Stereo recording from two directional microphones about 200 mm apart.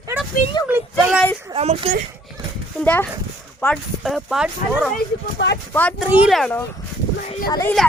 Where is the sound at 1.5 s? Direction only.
30° right (ahead or behind).